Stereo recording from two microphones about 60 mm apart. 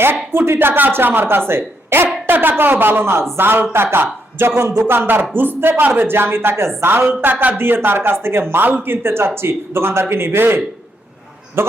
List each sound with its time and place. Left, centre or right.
0.3 s speech: right